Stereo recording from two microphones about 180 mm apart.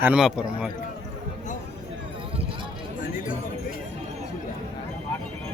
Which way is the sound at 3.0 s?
50° left (ahead or behind).